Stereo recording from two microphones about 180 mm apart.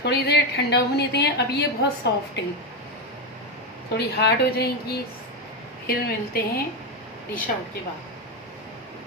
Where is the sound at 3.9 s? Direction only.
65° left (ahead or behind).